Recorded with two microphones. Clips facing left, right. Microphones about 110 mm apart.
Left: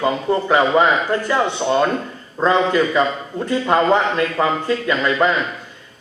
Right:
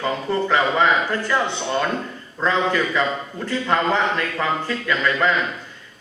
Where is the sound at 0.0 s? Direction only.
20° left (ahead or behind).